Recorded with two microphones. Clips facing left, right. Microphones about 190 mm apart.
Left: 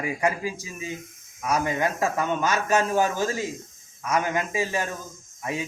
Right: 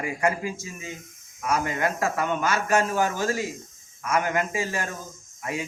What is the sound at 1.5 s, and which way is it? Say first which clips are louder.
A man's voice: left 1 dB; 20° left (ahead or behind).